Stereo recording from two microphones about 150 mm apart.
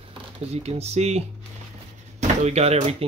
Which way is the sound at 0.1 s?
45° right (ahead or behind).